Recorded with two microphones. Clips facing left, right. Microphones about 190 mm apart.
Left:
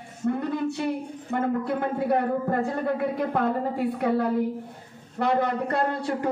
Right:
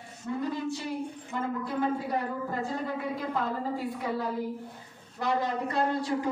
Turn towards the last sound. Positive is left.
turn(degrees=60)  # may be behind; listen again after turning